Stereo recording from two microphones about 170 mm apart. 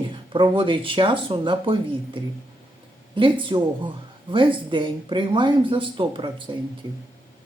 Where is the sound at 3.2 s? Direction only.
30° right (ahead or behind).